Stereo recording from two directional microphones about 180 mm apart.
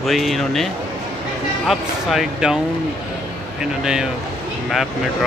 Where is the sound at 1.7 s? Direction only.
Centre (ahead or behind).